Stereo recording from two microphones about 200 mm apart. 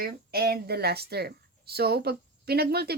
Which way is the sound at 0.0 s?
50° right (ahead or behind).